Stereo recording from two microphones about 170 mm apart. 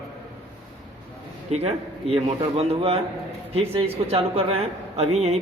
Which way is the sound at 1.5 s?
40° right (ahead or behind).